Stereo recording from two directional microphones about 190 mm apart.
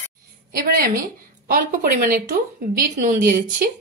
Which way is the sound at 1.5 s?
45° right (ahead or behind).